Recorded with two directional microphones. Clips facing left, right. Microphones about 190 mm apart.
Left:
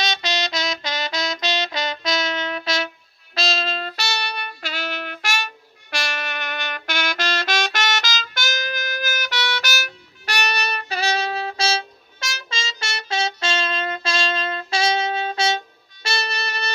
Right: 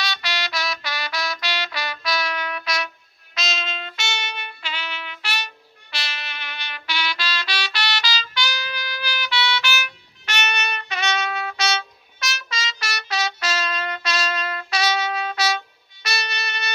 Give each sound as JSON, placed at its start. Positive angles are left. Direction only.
{"t": 0.0, "sound": "music", "side_deg": 20}